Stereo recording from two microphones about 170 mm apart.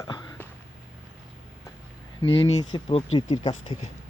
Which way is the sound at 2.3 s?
35° left (ahead or behind).